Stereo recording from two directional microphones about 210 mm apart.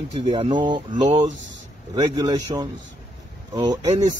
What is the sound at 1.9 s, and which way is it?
Speech, 20° right (ahead or behind).